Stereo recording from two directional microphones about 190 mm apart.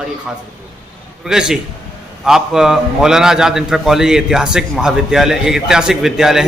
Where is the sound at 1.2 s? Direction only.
5° right (ahead or behind).